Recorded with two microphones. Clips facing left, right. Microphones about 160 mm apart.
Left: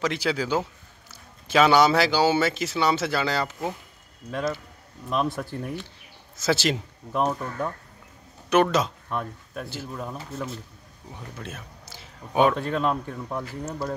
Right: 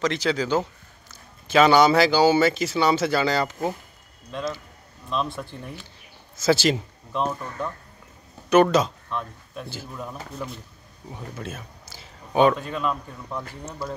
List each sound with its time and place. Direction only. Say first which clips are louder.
0.0 s speech: right 2 dB; 5° left (ahead or behind)
5.1 s speech: left 2 dB; 10° left (ahead or behind)
7.1 s speech: left 2 dB; 10° left (ahead or behind)
8.5 s speech: right 3 dB; centre (ahead or behind)
12.5 s speech: left 2 dB; 70° left (ahead or behind)
13.3 s speech: left 1 dB; 25° left (ahead or behind)